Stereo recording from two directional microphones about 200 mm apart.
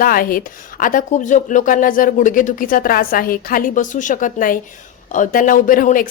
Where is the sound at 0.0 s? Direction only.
45° left (ahead or behind).